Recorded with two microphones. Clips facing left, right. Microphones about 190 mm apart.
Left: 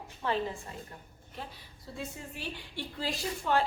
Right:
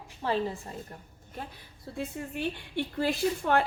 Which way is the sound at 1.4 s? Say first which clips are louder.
Right 3 dB; 55° right (ahead or behind).